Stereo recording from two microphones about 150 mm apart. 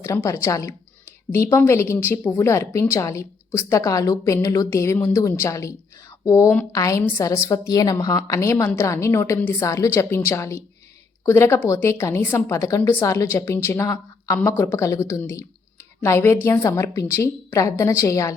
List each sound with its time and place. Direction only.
0.0 s a woman's voice: 20° left (ahead or behind)